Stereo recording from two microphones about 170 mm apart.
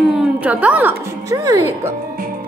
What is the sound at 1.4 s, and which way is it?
Speech, 20° right (ahead or behind).